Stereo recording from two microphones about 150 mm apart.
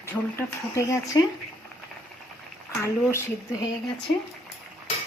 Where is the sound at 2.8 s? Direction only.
20° left (ahead or behind).